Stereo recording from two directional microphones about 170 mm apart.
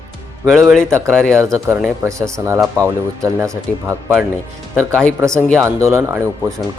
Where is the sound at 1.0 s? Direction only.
5° left (ahead or behind).